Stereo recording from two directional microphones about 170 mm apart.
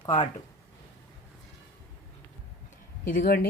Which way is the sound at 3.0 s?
65° left (ahead or behind).